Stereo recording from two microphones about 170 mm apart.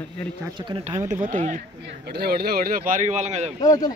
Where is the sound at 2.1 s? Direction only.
70° right (ahead or behind); by 3.5 s 45° right (ahead or behind).